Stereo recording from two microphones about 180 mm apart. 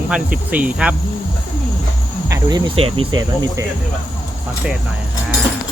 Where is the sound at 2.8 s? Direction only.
30° right (ahead or behind).